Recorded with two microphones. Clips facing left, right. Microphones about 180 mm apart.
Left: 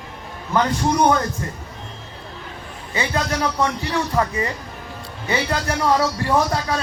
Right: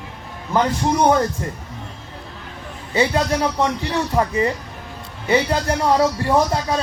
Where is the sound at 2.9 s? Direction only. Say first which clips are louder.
Right 5 dB; 30° right (ahead or behind).